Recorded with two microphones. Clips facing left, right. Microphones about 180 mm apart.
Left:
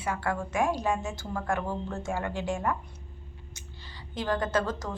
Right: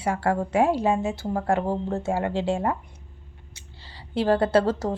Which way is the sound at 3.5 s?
30° right (ahead or behind).